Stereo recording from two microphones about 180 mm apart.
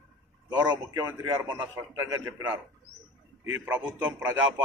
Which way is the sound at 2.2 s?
15° right (ahead or behind).